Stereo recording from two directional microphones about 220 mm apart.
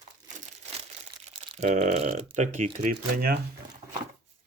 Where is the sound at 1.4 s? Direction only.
30° right (ahead or behind).